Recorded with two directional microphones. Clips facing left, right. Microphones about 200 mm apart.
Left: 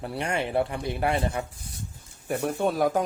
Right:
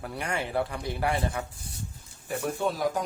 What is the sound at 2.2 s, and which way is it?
Speech, 55° left (ahead or behind).